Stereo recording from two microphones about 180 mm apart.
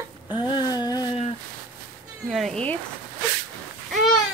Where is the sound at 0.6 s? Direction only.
20° left (ahead or behind).